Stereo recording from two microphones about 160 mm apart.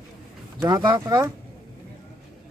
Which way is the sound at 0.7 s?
25° right (ahead or behind).